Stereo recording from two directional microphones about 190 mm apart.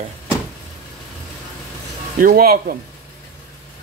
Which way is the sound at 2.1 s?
50° right (ahead or behind).